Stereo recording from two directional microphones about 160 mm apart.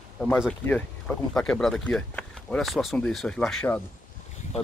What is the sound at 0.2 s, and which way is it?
Speech, 5° left (ahead or behind).